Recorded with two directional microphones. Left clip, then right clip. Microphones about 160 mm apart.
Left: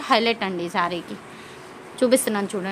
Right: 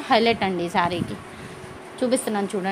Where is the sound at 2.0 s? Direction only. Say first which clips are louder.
Left 3 dB; 20° left (ahead or behind).